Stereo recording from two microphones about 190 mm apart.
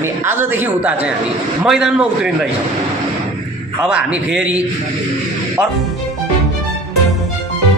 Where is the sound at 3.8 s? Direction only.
5° right (ahead or behind).